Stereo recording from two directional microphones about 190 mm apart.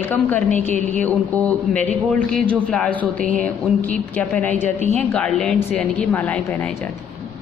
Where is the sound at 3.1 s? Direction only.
45° right (ahead or behind).